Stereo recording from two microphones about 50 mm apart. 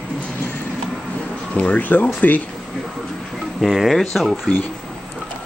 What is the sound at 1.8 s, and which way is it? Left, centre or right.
Speech, left.